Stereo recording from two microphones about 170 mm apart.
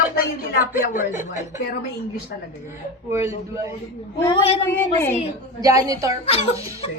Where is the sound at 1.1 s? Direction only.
50° left (ahead or behind).